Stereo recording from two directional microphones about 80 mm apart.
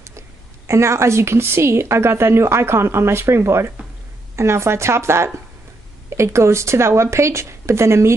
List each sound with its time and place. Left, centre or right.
0.7 s a woman's voice: right